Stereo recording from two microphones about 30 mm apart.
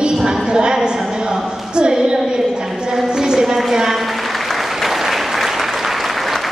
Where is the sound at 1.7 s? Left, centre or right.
Right.